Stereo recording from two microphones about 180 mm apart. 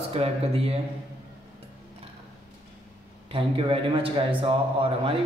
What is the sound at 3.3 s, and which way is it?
A man's voice, 30° right (ahead or behind).